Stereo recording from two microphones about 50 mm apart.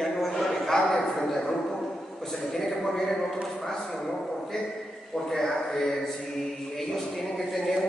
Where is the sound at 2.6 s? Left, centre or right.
Centre.